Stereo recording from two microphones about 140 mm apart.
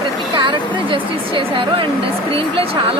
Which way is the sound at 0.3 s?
35° right (ahead or behind).